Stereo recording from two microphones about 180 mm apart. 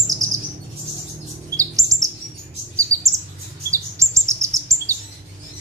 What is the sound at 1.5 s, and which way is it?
Chirp, 20° right (ahead or behind).